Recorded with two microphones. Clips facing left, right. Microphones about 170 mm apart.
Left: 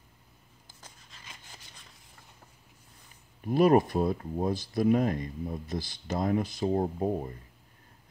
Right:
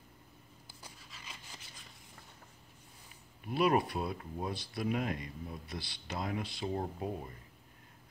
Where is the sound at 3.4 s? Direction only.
45° left (ahead or behind).